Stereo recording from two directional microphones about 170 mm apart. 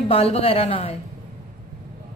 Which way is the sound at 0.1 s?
35° left (ahead or behind).